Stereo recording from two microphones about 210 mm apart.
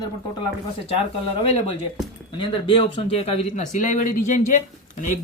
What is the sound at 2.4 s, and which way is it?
Speech, 25° left (ahead or behind).